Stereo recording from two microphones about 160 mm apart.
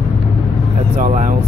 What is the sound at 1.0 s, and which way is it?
Speech, 50° right (ahead or behind).